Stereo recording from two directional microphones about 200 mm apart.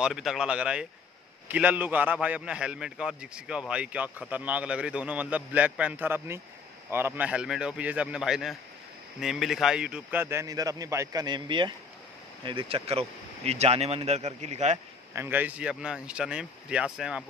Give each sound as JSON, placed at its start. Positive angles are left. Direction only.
{"t": 0.0, "sound": "a man's voice", "side_deg": 0}
{"t": 15.1, "sound": "speech", "side_deg": -10}